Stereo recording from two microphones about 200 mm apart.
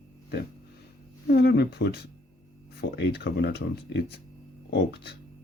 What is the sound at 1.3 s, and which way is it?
Speech, 55° left (ahead or behind).